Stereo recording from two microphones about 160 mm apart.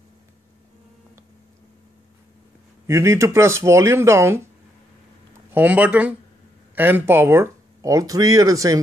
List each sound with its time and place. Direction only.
2.9 s speech: 15° right (ahead or behind)
5.5 s speech: 10° right (ahead or behind)